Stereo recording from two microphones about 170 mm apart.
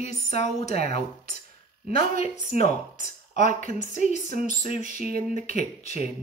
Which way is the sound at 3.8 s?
45° left (ahead or behind).